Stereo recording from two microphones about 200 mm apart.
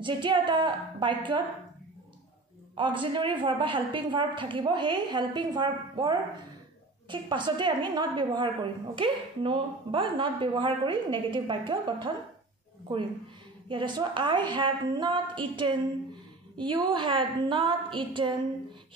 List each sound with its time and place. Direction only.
0.0 s a woman's voice: 25° right (ahead or behind)
2.7 s a woman's voice: 25° right (ahead or behind)